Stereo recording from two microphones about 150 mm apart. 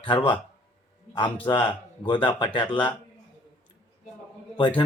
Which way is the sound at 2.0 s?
30° left (ahead or behind).